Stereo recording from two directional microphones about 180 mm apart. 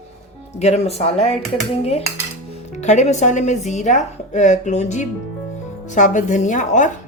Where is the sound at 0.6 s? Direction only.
35° left (ahead or behind).